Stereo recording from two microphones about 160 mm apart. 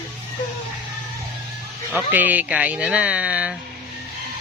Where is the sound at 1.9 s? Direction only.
10° right (ahead or behind).